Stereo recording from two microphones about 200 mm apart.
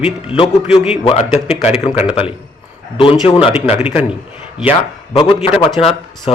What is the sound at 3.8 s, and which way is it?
Speech, 10° right (ahead or behind).